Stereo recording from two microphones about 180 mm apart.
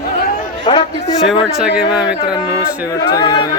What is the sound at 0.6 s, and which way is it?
Speech, 25° left (ahead or behind).